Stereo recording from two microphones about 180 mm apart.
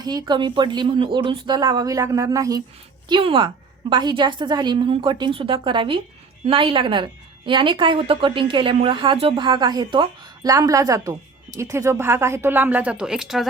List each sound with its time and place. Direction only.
0.0 s a woman's voice: 20° right (ahead or behind); by 13.5 s centre (ahead or behind)